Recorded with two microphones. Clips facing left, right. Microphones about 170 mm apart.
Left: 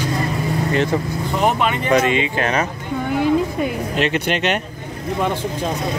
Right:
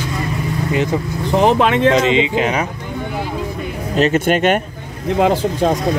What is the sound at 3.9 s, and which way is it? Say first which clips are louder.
Speech: right 9 dB; 40° right (ahead or behind).